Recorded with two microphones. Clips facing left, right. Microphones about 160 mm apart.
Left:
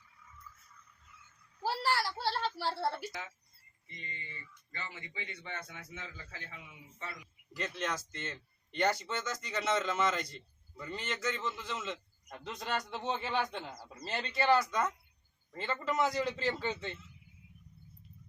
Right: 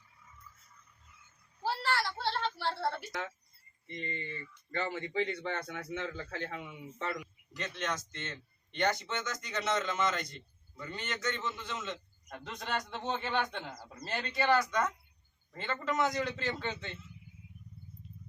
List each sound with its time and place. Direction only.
1.6 s a sound: 10° left (ahead or behind)
2.6 s a woman's voice: 5° left (ahead or behind)
3.8 s speech: 60° right (ahead or behind); by 7.3 s 80° right
7.5 s a man's voice: 5° left (ahead or behind)